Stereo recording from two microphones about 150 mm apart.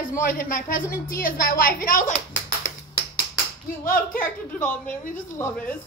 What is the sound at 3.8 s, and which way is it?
Speech, 65° left (ahead or behind).